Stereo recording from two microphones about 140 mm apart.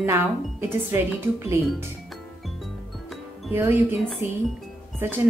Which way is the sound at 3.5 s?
15° right (ahead or behind).